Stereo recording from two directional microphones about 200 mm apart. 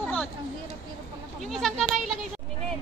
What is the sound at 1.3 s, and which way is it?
Goat, centre (ahead or behind).